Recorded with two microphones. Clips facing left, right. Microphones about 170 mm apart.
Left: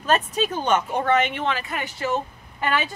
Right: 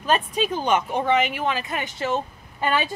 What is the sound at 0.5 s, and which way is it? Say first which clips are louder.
Speech: right 1 dB; 5° right (ahead or behind).